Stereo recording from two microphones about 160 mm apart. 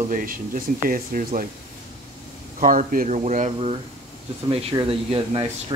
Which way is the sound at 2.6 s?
60° right (ahead or behind).